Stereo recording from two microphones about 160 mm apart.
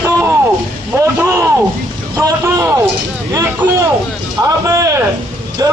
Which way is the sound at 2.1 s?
15° right (ahead or behind).